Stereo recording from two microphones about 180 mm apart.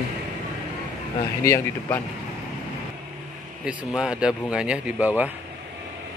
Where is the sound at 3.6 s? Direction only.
5° right (ahead or behind).